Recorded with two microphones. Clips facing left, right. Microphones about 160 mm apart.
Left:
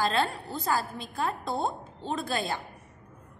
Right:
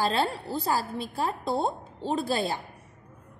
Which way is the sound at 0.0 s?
35° right (ahead or behind).